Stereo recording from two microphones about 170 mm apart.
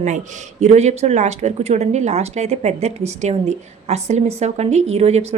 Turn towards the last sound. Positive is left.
turn(degrees=-35)  # may be behind; listen again after turning